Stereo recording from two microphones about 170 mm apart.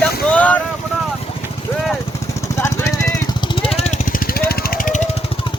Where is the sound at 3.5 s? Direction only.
35° left (ahead or behind).